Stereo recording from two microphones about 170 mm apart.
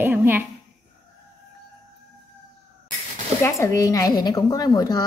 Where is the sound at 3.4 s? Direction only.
15° left (ahead or behind).